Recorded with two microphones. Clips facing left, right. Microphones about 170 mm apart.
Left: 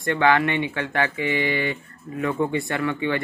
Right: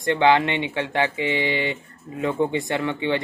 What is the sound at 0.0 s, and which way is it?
Speech, 20° right (ahead or behind).